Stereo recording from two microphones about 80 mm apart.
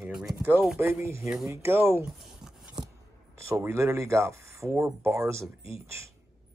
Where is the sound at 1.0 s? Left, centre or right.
Right.